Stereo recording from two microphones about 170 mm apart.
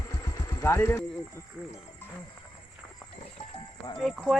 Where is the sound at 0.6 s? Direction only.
15° left (ahead or behind).